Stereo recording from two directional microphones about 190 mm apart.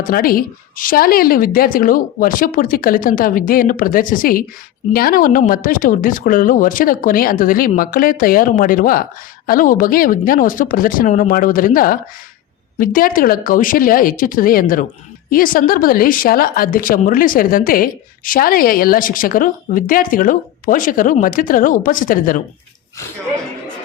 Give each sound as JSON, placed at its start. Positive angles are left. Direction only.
{"t": 0.1, "sound": "a woman's voice", "side_deg": 50}